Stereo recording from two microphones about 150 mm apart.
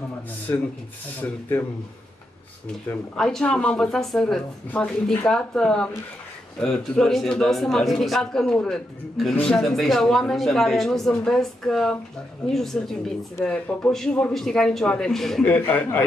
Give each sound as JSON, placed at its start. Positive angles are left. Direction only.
{"t": 0.5, "sound": "speech", "side_deg": 20}
{"t": 2.9, "sound": "a man's voice", "side_deg": 5}